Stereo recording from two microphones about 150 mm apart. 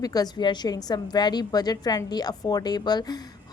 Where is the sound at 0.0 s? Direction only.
25° left (ahead or behind).